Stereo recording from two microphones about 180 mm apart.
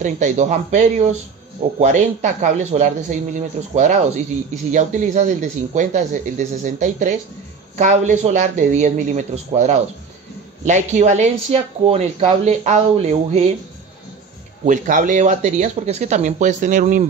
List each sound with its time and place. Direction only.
0.0 s speech: 40° right (ahead or behind)
14.7 s speech: 45° right (ahead or behind)